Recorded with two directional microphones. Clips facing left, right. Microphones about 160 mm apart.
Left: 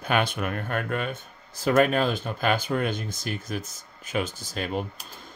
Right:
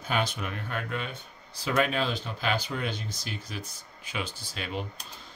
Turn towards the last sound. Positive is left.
turn(degrees=45)  # may be behind; listen again after turning